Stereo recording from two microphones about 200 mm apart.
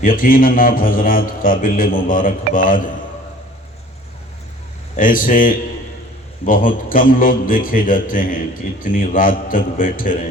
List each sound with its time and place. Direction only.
0.0 s a man's voice: 45° left (ahead or behind)
4.9 s a man's voice: 45° left (ahead or behind)